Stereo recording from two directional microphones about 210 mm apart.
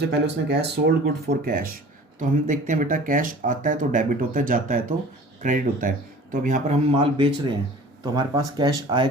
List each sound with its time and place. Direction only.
0.1 s speech: 55° right (ahead or behind); by 6.7 s 35° right (ahead or behind)
6.9 s speech: 25° right (ahead or behind)